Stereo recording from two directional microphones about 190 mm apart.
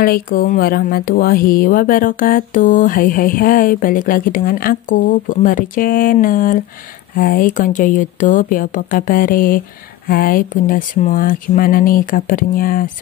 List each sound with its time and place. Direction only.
0.0 s speech: 50° left (ahead or behind)